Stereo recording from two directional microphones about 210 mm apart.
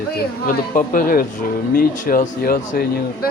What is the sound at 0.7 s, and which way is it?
Speech, 40° left (ahead or behind).